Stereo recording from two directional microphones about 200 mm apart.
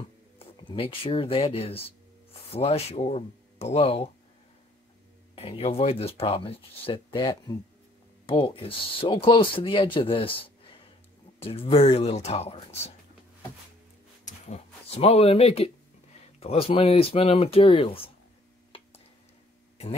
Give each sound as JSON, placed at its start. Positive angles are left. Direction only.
{"t": 0.4, "sound": "speech", "side_deg": 25}
{"t": 5.3, "sound": "speech", "side_deg": 30}
{"t": 14.2, "sound": "speech", "side_deg": 30}